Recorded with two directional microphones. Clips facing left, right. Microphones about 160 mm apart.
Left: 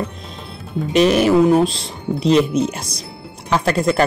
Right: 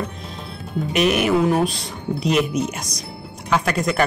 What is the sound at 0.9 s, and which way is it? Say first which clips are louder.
Speech: left 5 dB; 30° left (ahead or behind).